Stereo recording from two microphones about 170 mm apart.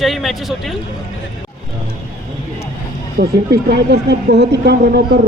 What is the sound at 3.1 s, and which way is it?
Speech, 70° right (ahead or behind).